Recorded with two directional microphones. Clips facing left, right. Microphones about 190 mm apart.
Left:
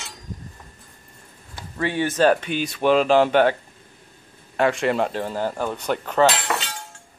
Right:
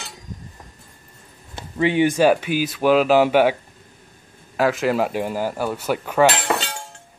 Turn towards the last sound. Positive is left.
turn(degrees=-30)  # may be behind; listen again after turning